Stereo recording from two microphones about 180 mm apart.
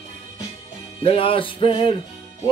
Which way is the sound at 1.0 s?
30° left (ahead or behind).